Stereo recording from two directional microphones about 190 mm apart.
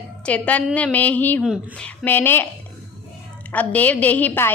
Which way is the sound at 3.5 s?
10° left (ahead or behind).